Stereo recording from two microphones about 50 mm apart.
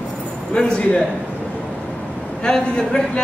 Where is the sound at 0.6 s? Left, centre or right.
Centre.